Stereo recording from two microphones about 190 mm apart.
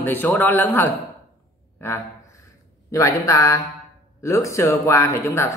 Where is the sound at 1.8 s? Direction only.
10° left (ahead or behind).